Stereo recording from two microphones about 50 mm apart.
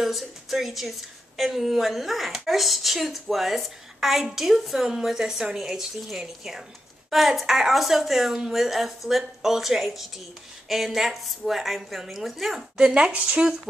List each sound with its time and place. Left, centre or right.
0.0 s a woman's voice: centre
12.7 s speech: centre